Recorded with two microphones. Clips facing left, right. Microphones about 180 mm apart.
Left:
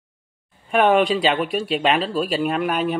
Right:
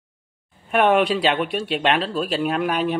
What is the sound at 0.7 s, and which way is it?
Speech, centre (ahead or behind).